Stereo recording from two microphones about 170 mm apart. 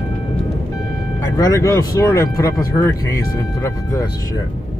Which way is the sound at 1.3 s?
20° left (ahead or behind).